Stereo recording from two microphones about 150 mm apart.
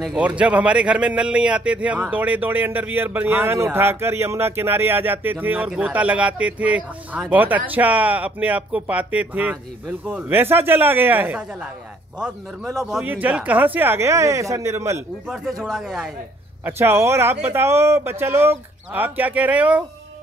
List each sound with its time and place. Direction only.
0.0 s speech: 5° right (ahead or behind)
15.2 s speech: centre (ahead or behind)
16.6 s speech: 15° right (ahead or behind)